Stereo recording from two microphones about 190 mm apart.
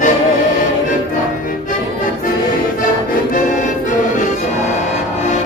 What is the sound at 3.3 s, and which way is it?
Music, 40° left (ahead or behind).